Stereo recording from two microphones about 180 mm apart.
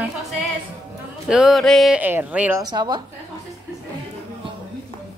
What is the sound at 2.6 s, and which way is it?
Speech, 25° right (ahead or behind).